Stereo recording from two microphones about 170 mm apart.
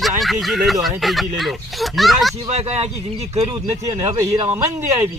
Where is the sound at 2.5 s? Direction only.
40° right (ahead or behind).